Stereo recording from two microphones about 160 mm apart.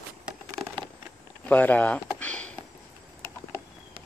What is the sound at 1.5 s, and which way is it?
Speech, 10° left (ahead or behind).